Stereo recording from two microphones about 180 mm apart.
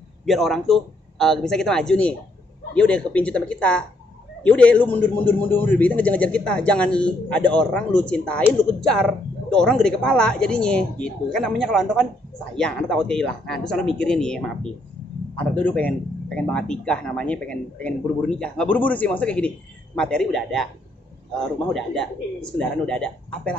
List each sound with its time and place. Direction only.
0.2 s speech: centre (ahead or behind)